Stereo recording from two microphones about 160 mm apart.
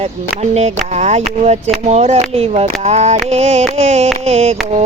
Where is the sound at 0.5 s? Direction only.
45° right (ahead or behind).